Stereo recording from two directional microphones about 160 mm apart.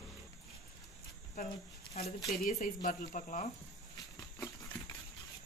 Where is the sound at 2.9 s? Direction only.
50° left (ahead or behind).